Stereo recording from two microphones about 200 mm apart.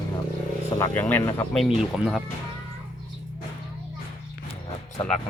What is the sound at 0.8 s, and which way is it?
Speech, 10° left (ahead or behind).